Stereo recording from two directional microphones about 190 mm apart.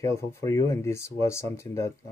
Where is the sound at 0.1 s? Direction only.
15° left (ahead or behind).